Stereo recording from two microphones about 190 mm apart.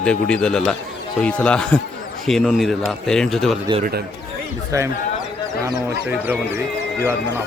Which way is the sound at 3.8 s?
55° right (ahead or behind).